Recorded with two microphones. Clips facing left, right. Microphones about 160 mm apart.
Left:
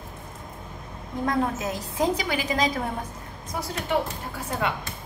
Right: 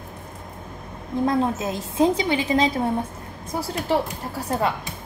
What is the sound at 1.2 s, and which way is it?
A woman's voice, 25° right (ahead or behind).